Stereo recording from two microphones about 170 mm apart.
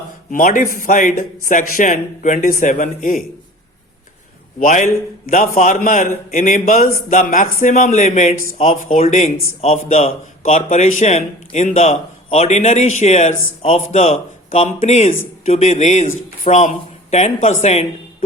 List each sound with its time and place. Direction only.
0.3 s a man's voice: 55° left (ahead or behind)
4.6 s a man's voice: 45° left (ahead or behind)